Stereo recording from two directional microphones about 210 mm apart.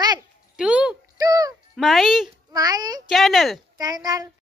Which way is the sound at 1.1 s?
15° right (ahead or behind).